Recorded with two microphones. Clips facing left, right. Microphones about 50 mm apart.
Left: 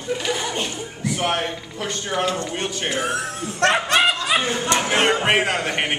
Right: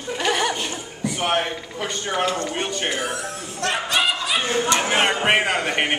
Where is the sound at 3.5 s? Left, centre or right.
Left.